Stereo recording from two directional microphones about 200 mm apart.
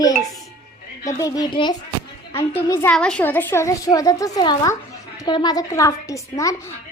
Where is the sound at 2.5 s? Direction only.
10° left (ahead or behind).